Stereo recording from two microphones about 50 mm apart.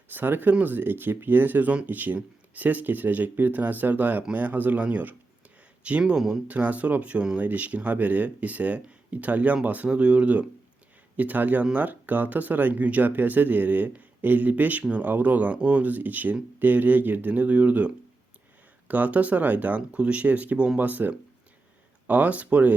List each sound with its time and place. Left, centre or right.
0.1 s speech: right; by 6.4 s centre
6.5 s speech: right